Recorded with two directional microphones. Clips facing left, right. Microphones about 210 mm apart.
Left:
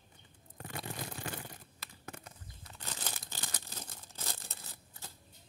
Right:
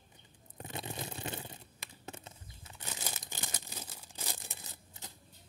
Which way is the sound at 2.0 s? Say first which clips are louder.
Right 1 dB; 25° right (ahead or behind).